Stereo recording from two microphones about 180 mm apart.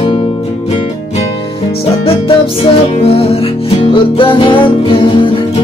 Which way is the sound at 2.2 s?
30° left (ahead or behind).